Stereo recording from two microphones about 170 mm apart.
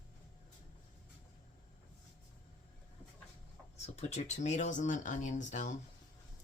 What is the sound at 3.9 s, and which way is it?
Speech, 40° left (ahead or behind).